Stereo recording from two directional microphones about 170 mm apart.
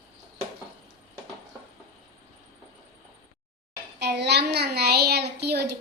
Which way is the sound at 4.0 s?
75° right (ahead or behind).